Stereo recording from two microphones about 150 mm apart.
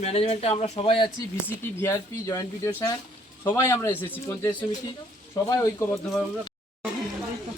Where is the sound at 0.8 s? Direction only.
35° left (ahead or behind).